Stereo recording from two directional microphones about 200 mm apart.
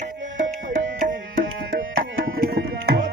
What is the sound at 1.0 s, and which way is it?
Tabla, 40° right (ahead or behind).